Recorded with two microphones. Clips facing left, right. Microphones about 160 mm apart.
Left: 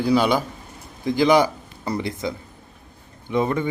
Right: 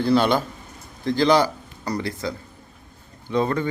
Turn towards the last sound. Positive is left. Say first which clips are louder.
# even
turn(degrees=15)  # may be behind; listen again after turning